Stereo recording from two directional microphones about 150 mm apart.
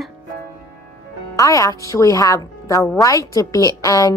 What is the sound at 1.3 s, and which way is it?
A woman's voice, 20° left (ahead or behind).